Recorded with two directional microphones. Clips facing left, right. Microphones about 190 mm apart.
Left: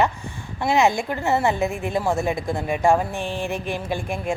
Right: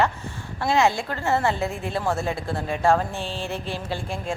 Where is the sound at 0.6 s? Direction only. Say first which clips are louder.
Left 2 dB; 15° left (ahead or behind).